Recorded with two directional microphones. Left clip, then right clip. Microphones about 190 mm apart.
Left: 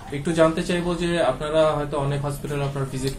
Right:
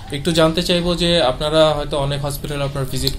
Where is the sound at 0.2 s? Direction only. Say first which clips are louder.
Right 3 dB; 55° right (ahead or behind).